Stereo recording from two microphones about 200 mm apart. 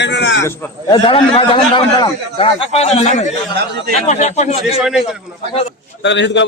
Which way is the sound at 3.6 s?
55° right (ahead or behind).